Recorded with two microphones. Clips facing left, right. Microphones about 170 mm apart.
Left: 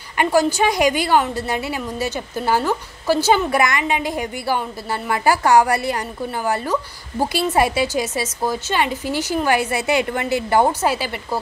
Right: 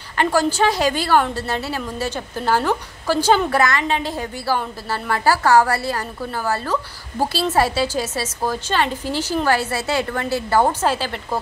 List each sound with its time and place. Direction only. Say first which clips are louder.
0.2 s a woman's voice: left 1 dB; 10° left (ahead or behind)